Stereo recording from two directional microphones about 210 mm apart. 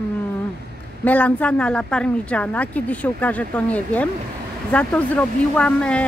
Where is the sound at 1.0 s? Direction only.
5° left (ahead or behind).